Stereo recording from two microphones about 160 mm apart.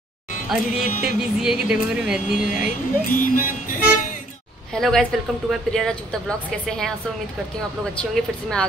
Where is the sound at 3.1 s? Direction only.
60° left (ahead or behind).